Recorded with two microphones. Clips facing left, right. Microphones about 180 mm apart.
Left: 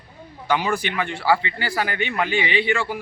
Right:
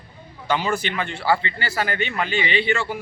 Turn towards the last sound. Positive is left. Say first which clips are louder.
# even
turn(degrees=10)  # may be behind; listen again after turning